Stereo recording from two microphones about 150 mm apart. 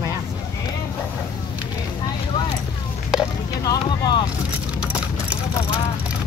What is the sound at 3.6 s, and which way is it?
Speech, 25° left (ahead or behind).